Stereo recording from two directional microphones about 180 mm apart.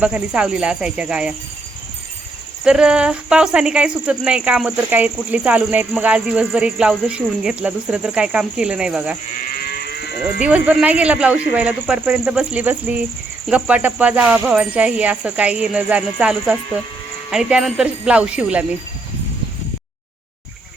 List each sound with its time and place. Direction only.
0.0 s speech: 5° right (ahead or behind)
2.6 s speech: 5° right (ahead or behind)
9.6 s moo: 60° left (ahead or behind)
10.4 s speech: 5° right (ahead or behind)